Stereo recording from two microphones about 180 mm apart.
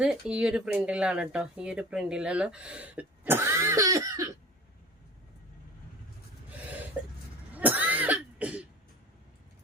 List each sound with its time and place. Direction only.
0.0 s speech: 5° right (ahead or behind)
6.5 s cough: 10° right (ahead or behind)